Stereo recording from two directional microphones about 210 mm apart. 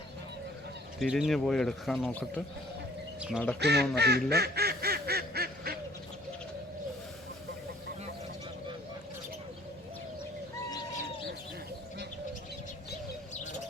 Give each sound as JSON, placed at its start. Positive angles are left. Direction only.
{"t": 0.9, "sound": "speech", "side_deg": 0}
{"t": 3.6, "sound": "speech", "side_deg": -50}
{"t": 3.9, "sound": "duck", "side_deg": -50}